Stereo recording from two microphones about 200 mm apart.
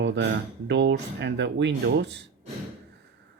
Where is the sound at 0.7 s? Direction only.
60° right (ahead or behind).